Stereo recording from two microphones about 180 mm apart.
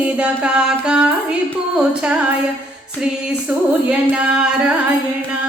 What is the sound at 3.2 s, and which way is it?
Music, 5° right (ahead or behind).